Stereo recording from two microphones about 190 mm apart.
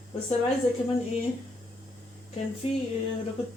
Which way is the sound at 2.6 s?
30° left (ahead or behind).